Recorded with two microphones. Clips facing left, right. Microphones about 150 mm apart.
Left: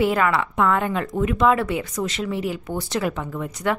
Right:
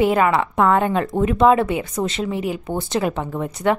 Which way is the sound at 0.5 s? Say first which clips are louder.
Right 4 dB; 35° right (ahead or behind).